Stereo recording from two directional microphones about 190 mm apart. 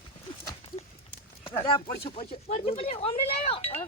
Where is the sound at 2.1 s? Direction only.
35° left (ahead or behind).